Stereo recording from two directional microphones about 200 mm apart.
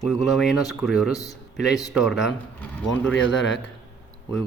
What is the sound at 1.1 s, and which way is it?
Speech, 15° left (ahead or behind).